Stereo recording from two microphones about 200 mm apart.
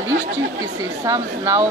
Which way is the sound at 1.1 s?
15° right (ahead or behind).